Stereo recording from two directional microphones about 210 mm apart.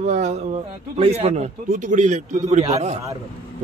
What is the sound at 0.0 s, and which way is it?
A man's voice, 35° right (ahead or behind).